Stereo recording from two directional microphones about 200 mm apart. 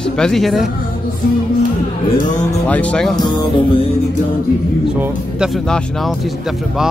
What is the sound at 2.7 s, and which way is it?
Speech, 5° left (ahead or behind).